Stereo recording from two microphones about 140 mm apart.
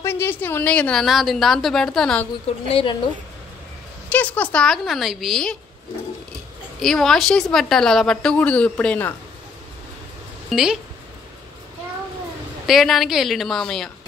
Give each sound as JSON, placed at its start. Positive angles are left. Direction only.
{"t": 0.0, "sound": "a woman's voice", "side_deg": 15}
{"t": 2.7, "sound": "a woman's voice", "side_deg": 40}
{"t": 4.1, "sound": "a woman's voice", "side_deg": 10}
{"t": 6.8, "sound": "a woman's voice", "side_deg": 5}
{"t": 10.5, "sound": "a woman's voice", "side_deg": 0}
{"t": 12.6, "sound": "a woman's voice", "side_deg": 0}